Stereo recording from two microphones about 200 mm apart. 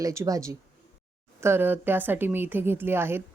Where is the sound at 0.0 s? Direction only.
15° right (ahead or behind).